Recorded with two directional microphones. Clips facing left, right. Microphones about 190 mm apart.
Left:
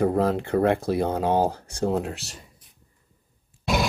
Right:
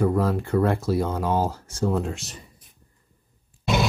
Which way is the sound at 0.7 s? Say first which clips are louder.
Left 2 dB; 55° left (ahead or behind).